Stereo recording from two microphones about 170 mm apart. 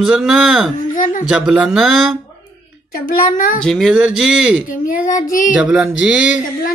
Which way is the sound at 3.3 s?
50° left (ahead or behind).